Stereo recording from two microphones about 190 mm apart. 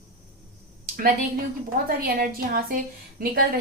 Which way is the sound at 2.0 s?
50° right (ahead or behind).